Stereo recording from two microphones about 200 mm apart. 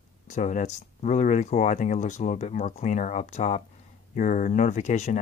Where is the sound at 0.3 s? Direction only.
40° left (ahead or behind).